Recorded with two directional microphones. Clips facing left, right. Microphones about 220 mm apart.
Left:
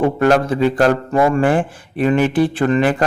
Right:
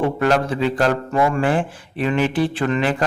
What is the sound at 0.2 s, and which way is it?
A man's voice, 45° left (ahead or behind).